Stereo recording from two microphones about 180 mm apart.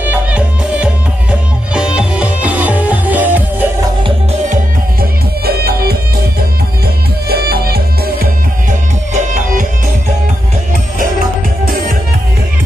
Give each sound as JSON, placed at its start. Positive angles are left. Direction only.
{"t": 0.1, "sound": "music", "side_deg": -5}
{"t": 5.4, "sound": "music", "side_deg": -60}
{"t": 7.2, "sound": "music", "side_deg": -60}
{"t": 9.1, "sound": "music", "side_deg": -40}